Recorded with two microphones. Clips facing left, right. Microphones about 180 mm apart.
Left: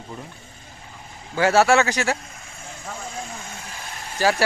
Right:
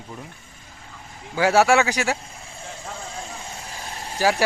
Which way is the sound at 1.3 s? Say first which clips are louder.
Even; 10° right (ahead or behind).